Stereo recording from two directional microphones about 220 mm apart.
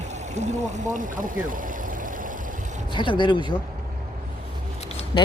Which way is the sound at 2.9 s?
20° left (ahead or behind).